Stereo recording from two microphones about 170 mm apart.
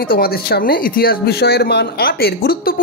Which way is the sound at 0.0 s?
60° left (ahead or behind).